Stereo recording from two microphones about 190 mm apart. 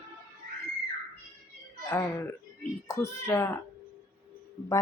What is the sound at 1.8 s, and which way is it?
A woman's voice, 15° left (ahead or behind).